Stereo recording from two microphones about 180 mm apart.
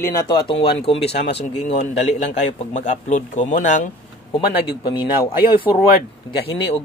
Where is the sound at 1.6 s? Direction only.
40° left (ahead or behind).